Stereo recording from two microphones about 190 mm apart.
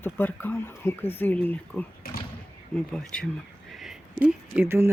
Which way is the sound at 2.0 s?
50° left (ahead or behind).